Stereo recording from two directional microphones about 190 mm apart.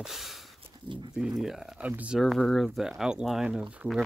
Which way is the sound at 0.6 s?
25° right (ahead or behind).